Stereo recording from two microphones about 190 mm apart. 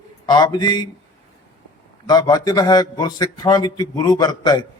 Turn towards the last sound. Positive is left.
turn(degrees=20)  # may be behind; listen again after turning